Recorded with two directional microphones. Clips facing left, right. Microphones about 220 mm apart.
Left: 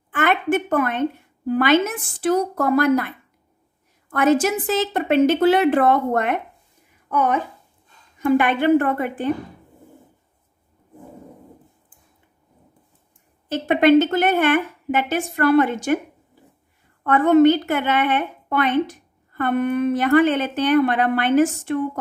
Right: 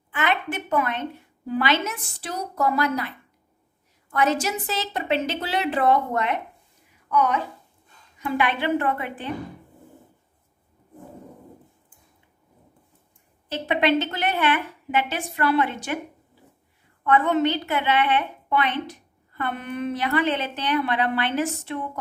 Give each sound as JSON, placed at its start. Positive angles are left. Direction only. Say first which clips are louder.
{"t": 0.1, "sound": "a sound", "louder": "left 7 dB", "side_deg": 50}
{"t": 1.5, "sound": "a woman's voice", "louder": "left 7 dB", "side_deg": 50}
{"t": 4.1, "sound": "a woman's voice", "louder": "left 6 dB", "side_deg": 50}
{"t": 13.5, "sound": "a woman's voice", "louder": "left 7 dB", "side_deg": 50}
{"t": 17.0, "sound": "a woman's voice", "louder": "left 7 dB", "side_deg": 45}